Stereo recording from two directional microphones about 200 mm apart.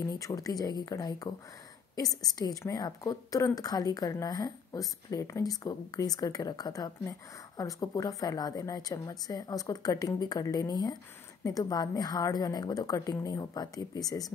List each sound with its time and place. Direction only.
0.0 s a woman's voice: 15° left (ahead or behind)